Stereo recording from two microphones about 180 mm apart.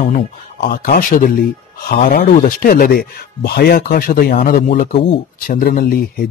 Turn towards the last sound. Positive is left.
turn(degrees=55)  # may be behind; listen again after turning